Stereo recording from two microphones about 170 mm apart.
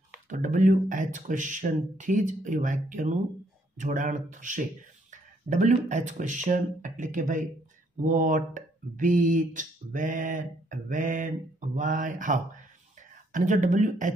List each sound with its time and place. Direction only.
0.3 s speech: 50° right (ahead or behind)